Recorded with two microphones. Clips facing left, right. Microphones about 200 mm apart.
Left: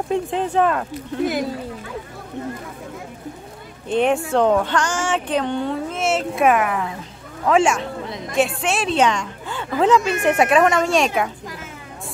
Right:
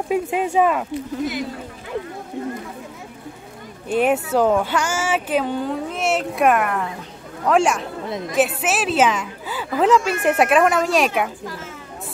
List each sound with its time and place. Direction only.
0.1 s speech: 10° right (ahead or behind)
1.2 s speech: 50° left (ahead or behind)
3.9 s speech: 5° right (ahead or behind)